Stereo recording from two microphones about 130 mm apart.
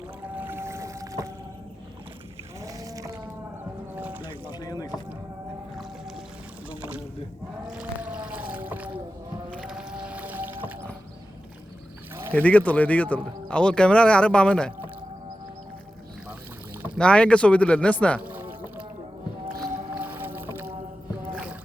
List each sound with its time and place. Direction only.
0.3 s boat: 15° right (ahead or behind)
2.6 s boat: 25° right (ahead or behind)
3.9 s boat: 15° right (ahead or behind)
4.4 s boat: 30° left (ahead or behind)
5.7 s music: 5° right (ahead or behind)
6.7 s boat: 10° right (ahead or behind)
9.6 s music: 5° right (ahead or behind)
12.3 s speech: 10° left (ahead or behind)
17.0 s speech: 10° left (ahead or behind)
18.2 s music: 15° right (ahead or behind)
20.0 s boat: 15° right (ahead or behind)
21.2 s rowboat: 10° right (ahead or behind)